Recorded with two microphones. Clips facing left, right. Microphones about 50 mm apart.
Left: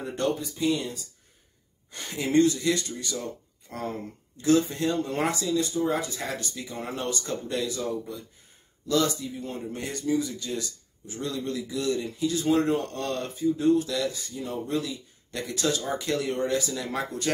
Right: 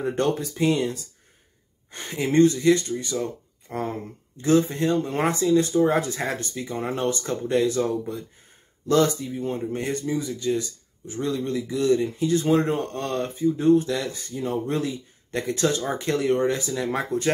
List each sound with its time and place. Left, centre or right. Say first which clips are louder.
0.1 s speech: even; right
1.9 s speech: right 3 dB; right
5.6 s speech: right 6 dB; right
6.2 s speech: right 5 dB; right
9.3 s speech: right 7 dB; right